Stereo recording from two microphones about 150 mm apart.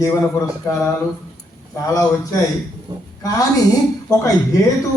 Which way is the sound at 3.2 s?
25° left (ahead or behind).